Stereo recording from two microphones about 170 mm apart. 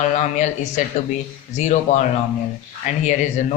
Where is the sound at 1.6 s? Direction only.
45° left (ahead or behind).